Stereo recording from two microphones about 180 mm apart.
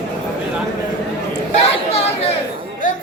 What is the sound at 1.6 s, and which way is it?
Chatter, 35° left (ahead or behind).